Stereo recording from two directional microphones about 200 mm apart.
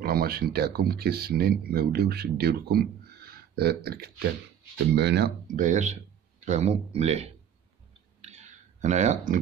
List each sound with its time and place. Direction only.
0.0 s speech: 50° right (ahead or behind)
5.6 s speech: 35° right (ahead or behind)
8.2 s clicking: 35° right (ahead or behind)